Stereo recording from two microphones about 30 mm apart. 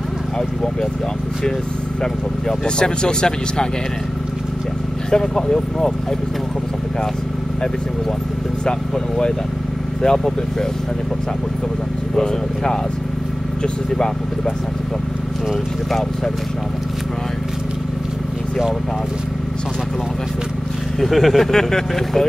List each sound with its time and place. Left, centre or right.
2.6 s speech: left
5.1 s speech: centre
10.0 s speech: centre
13.6 s speech: left
21.0 s speech: centre
21.5 s speech: centre